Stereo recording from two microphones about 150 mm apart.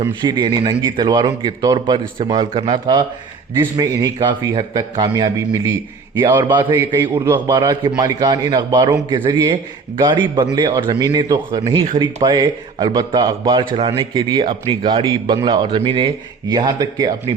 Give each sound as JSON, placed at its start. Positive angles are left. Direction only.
{"t": 0.2, "sound": "a man's voice", "side_deg": -30}
{"t": 6.4, "sound": "a man's voice", "side_deg": -30}